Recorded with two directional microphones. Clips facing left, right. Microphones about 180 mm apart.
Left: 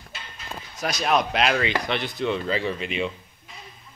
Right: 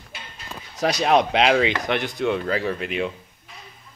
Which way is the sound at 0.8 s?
35° right (ahead or behind).